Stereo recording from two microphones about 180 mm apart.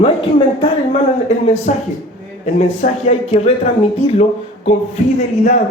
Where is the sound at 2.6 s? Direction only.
35° left (ahead or behind).